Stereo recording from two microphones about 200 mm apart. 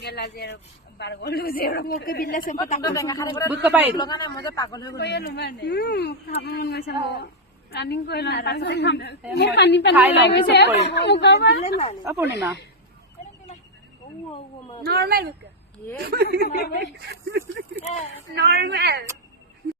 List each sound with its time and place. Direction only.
0.0 s a woman's voice: 55° left (ahead or behind)
2.8 s speech: 15° left (ahead or behind)
3.6 s speech: 10° right (ahead or behind)
3.9 s speech: 20° left (ahead or behind)
4.9 s speech: 55° left (ahead or behind)
9.9 s speech: 5° right (ahead or behind)
10.2 s speech: 60° left (ahead or behind)
12.0 s speech: 10° right (ahead or behind)
14.8 s speech: 50° right (ahead or behind)
16.5 s a woman's voice: 45° left (ahead or behind)
16.8 s a woman's voice: 55° right (ahead or behind)